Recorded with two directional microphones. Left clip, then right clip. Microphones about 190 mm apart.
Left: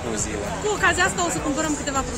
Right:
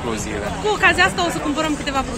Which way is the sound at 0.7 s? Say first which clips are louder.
Right 5 dB; 20° left (ahead or behind).